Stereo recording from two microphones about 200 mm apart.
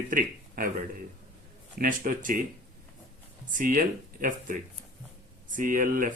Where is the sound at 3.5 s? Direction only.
40° right (ahead or behind).